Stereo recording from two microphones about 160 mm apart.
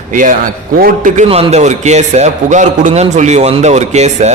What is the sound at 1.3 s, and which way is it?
A man's voice, 40° right (ahead or behind).